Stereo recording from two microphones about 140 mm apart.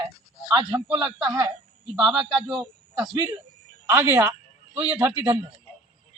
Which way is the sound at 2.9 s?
30° right (ahead or behind).